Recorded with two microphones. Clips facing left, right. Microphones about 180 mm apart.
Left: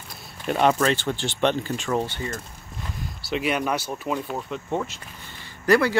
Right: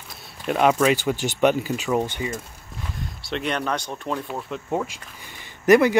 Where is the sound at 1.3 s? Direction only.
10° right (ahead or behind).